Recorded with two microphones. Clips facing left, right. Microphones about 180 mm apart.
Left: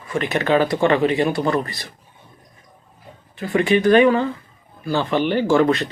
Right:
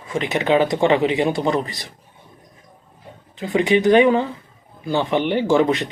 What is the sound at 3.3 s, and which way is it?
Speech, 20° right (ahead or behind).